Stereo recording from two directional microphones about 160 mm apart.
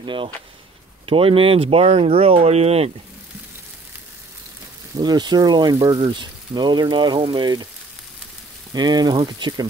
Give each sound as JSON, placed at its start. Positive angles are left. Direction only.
{"t": 0.0, "sound": "speech", "side_deg": -30}
{"t": 4.9, "sound": "speech", "side_deg": -25}
{"t": 8.7, "sound": "speech", "side_deg": -25}